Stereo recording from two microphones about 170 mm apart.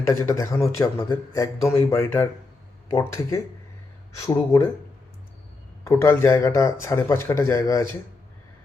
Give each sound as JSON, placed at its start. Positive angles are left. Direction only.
{"t": 0.0, "sound": "speech", "side_deg": 15}
{"t": 5.8, "sound": "speech", "side_deg": 15}